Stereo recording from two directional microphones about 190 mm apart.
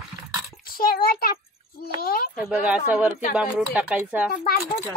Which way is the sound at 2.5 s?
5° right (ahead or behind).